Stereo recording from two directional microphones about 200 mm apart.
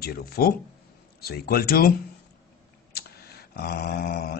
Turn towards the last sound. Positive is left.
turn(degrees=50)  # may be behind; listen again after turning